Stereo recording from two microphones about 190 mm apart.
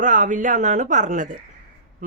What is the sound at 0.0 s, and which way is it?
Speech, 40° right (ahead or behind).